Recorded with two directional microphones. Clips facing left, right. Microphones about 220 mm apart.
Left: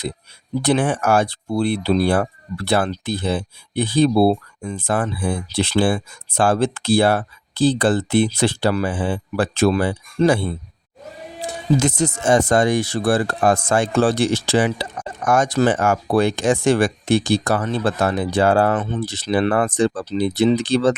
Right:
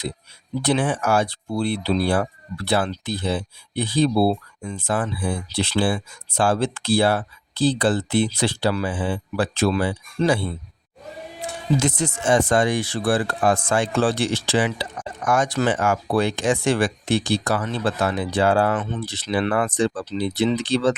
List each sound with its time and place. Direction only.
0.6 s speech: 50° left (ahead or behind)
11.8 s speech: 45° left (ahead or behind)